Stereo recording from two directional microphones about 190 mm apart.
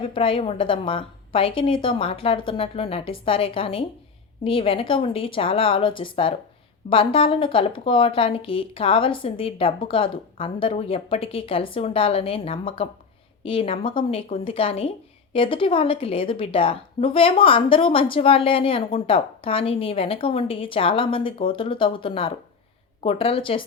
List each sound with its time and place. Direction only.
0.1 s a woman's voice: 25° left (ahead or behind)